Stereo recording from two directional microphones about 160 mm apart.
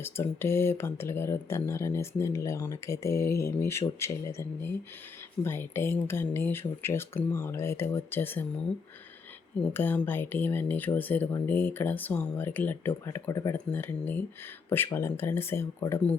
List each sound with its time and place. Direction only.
0.0 s speech: 15° left (ahead or behind)
9.7 s speech: 10° left (ahead or behind)